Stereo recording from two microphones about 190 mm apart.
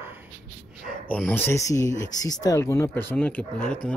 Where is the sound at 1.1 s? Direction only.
5° left (ahead or behind).